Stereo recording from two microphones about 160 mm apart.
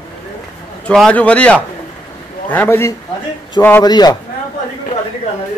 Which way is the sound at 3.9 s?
25° left (ahead or behind).